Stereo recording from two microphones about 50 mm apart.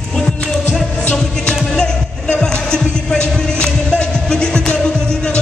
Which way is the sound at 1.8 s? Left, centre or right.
Centre.